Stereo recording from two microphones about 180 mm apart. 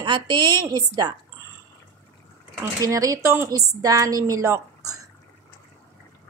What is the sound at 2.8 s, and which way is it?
A woman's voice, 20° right (ahead or behind).